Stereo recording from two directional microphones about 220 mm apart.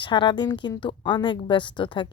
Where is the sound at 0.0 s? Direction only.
20° left (ahead or behind).